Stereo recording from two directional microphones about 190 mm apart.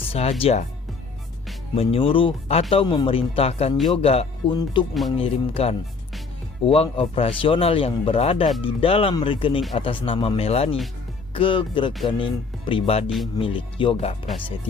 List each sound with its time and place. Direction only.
0.1 s speech: 30° left (ahead or behind)
1.7 s speech: 30° left (ahead or behind)